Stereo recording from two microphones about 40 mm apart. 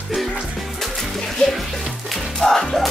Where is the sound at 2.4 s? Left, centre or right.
Centre.